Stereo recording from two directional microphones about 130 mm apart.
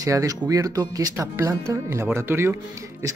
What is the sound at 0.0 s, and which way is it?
Speech, 25° right (ahead or behind).